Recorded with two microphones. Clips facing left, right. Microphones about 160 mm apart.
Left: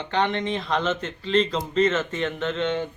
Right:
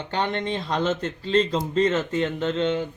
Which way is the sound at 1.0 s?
35° right (ahead or behind).